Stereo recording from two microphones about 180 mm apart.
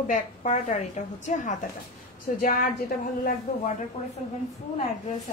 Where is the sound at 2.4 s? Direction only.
55° left (ahead or behind).